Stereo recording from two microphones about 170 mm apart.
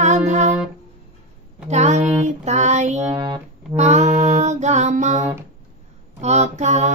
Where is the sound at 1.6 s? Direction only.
40° right (ahead or behind).